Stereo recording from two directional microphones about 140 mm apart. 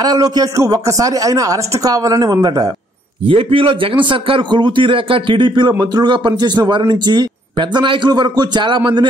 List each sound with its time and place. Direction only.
0.0 s speech: 30° right (ahead or behind)
3.3 s a man's voice: 40° right (ahead or behind)